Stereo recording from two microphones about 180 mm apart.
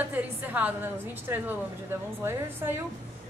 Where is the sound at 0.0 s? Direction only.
10° right (ahead or behind).